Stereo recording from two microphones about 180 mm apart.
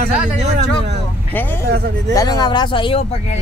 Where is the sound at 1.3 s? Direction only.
10° left (ahead or behind); by 3.0 s 30° left (ahead or behind).